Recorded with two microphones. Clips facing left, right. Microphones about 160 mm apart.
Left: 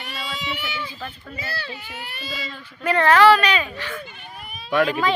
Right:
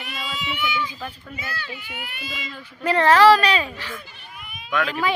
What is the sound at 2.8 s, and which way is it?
A child's voice, 30° right (ahead or behind).